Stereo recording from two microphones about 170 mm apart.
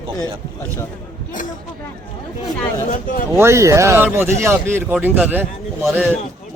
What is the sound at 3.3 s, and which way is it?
A man's voice, 15° right (ahead or behind).